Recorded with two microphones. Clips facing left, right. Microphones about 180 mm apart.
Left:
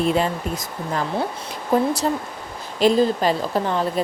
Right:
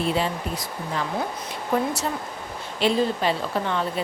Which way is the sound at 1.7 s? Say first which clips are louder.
Left 5 dB; 40° left (ahead or behind).